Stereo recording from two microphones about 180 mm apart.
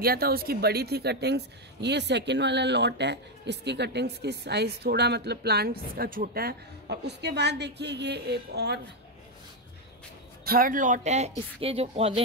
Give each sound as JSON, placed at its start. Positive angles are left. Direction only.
{"t": 0.0, "sound": "a woman's voice", "side_deg": -55}
{"t": 10.4, "sound": "speech", "side_deg": -55}